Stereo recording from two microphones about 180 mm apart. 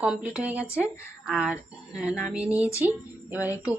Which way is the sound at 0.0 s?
5° right (ahead or behind).